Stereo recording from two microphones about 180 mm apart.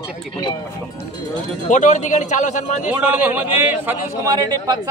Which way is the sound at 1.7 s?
45° left (ahead or behind).